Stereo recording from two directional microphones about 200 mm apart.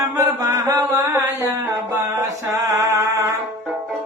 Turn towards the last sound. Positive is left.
turn(degrees=-15)  # may be behind; listen again after turning